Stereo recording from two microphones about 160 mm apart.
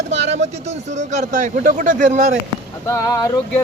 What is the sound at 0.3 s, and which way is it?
A man's voice, 45° right (ahead or behind).